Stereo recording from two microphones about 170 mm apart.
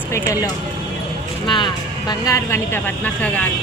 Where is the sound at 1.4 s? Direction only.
30° left (ahead or behind); by 3.5 s 10° left (ahead or behind).